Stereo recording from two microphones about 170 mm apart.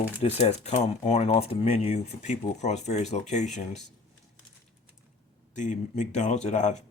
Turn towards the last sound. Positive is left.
turn(degrees=45)  # may be behind; listen again after turning